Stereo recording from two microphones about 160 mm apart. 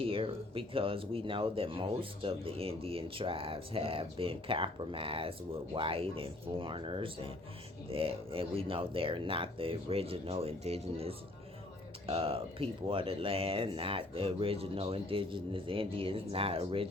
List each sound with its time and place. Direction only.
0.0 s speech: 35° right (ahead or behind)